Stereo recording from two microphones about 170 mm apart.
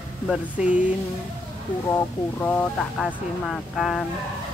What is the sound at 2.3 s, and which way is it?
Speech, 10° left (ahead or behind).